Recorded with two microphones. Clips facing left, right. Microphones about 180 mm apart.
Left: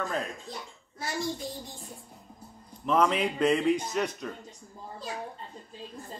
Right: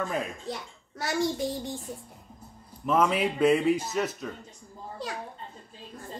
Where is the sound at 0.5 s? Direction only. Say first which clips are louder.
Right 5 dB; 75° right (ahead or behind).